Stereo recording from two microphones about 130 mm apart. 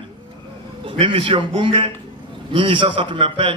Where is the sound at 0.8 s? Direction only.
40° right (ahead or behind).